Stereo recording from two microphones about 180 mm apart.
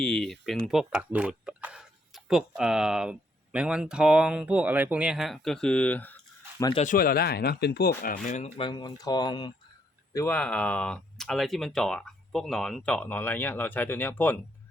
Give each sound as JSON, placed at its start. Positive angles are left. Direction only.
{"t": 0.0, "sound": "speech", "side_deg": 5}
{"t": 6.7, "sound": "speech", "side_deg": 45}
{"t": 8.5, "sound": "speech", "side_deg": 25}
{"t": 10.1, "sound": "speech", "side_deg": 15}